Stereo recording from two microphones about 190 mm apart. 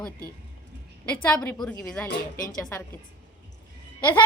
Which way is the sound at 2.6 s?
15° left (ahead or behind).